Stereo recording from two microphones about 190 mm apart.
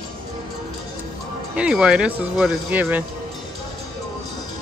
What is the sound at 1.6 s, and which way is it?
Speech, 5° right (ahead or behind).